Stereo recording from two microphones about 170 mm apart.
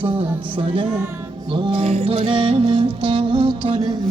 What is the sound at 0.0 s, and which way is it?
Speech, 30° right (ahead or behind).